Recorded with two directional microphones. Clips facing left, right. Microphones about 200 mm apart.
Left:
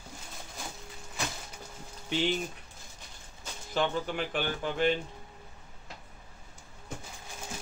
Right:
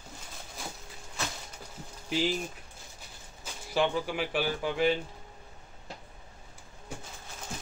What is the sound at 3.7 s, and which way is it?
Speech, 10° right (ahead or behind).